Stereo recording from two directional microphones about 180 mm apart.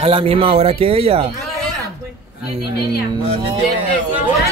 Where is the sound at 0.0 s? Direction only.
30° right (ahead or behind).